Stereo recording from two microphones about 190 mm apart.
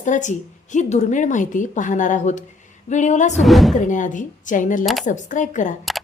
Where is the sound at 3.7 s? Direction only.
40° left (ahead or behind).